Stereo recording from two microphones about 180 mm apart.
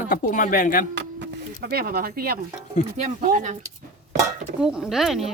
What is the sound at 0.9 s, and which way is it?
Speech, 70° right (ahead or behind).